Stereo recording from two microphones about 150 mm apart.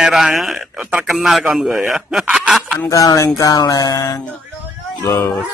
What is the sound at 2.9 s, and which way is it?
Music, 25° left (ahead or behind).